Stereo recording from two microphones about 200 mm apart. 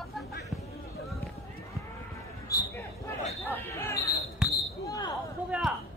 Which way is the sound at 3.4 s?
10° left (ahead or behind).